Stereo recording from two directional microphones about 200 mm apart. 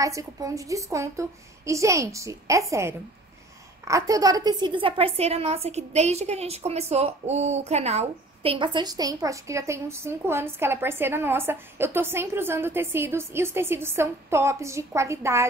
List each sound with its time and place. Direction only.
0.0 s a woman's voice: 15° right (ahead or behind)